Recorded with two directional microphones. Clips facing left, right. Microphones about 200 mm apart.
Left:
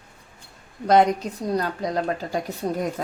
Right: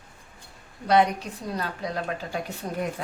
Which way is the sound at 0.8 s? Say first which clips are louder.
Left 4 dB; 45° left (ahead or behind).